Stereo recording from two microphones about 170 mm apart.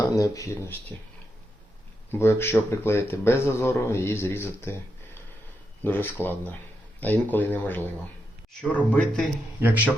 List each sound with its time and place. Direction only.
0.0 s speech: 20° left (ahead or behind)
2.1 s speech: 15° left (ahead or behind)
5.8 s speech: 10° left (ahead or behind)
9.6 s a man's voice: 10° right (ahead or behind)